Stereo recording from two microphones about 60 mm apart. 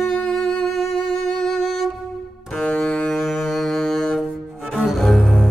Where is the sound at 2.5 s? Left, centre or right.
Centre.